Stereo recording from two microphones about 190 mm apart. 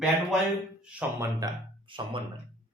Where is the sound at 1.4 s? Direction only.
25° right (ahead or behind).